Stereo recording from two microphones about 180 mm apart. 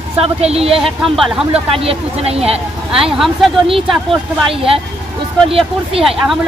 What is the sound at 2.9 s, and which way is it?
Speech, 5° right (ahead or behind).